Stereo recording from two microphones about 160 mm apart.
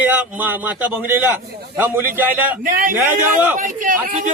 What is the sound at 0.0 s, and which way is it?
Speech, 10° right (ahead or behind).